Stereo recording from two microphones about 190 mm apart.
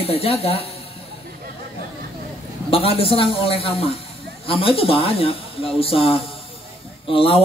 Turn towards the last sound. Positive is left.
turn(degrees=30)  # may be behind; listen again after turning